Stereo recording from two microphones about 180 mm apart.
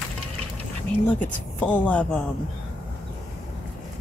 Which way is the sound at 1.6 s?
5° left (ahead or behind).